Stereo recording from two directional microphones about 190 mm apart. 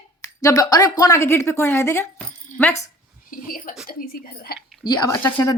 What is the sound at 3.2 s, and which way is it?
Speech, 50° left (ahead or behind).